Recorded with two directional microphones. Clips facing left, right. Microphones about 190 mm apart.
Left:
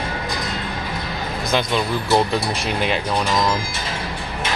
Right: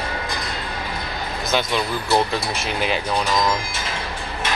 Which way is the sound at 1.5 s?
Centre (ahead or behind).